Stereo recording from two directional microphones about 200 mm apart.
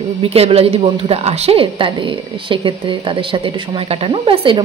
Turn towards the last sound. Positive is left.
turn(degrees=-25)  # may be behind; listen again after turning